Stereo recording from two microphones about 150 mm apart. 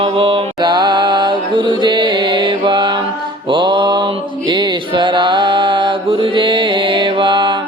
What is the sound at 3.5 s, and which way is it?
Mantra, 30° right (ahead or behind).